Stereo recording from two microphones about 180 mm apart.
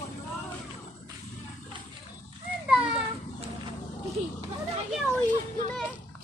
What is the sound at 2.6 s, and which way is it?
Children playing, 5° right (ahead or behind).